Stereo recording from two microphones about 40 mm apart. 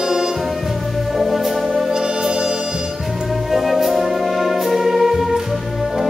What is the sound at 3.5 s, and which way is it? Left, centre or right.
Music, centre.